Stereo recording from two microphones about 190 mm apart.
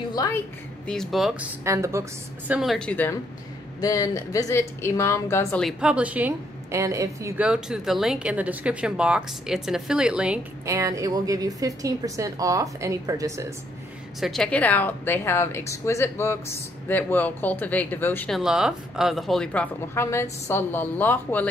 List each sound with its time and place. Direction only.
0.1 s a woman's voice: 20° left (ahead or behind)
0.8 s a woman's voice: centre (ahead or behind)
1.6 s a woman's voice: 15° right (ahead or behind); by 5.6 s 15° left (ahead or behind)
5.6 s a woman's voice: centre (ahead or behind)
10.7 s a woman's voice: 15° right (ahead or behind)
14.2 s a woman's voice: centre (ahead or behind)
18.4 s a woman's voice: 5° right (ahead or behind)